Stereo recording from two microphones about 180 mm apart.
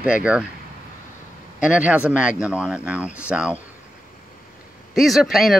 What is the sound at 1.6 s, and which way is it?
Speech, 5° right (ahead or behind).